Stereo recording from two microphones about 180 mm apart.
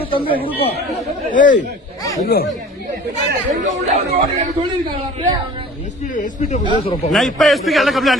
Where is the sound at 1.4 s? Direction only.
45° left (ahead or behind).